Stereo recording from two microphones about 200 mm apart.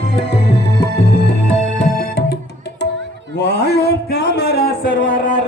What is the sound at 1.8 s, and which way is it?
Music, 45° left (ahead or behind).